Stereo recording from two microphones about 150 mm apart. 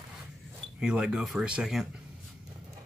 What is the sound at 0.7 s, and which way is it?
Speech, 5° right (ahead or behind).